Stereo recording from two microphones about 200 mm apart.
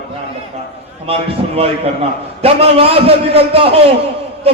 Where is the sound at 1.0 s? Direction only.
30° right (ahead or behind).